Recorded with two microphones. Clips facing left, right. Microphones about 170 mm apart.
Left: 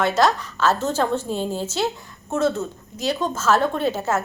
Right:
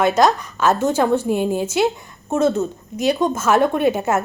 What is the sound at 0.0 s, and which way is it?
A woman's voice, 15° right (ahead or behind).